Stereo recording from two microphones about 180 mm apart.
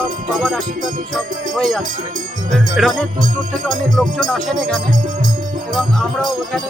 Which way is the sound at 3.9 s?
Centre (ahead or behind).